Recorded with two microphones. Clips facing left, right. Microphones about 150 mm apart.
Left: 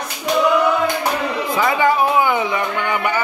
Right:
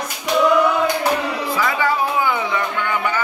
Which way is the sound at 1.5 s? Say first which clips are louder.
Left 4 dB; 20° left (ahead or behind).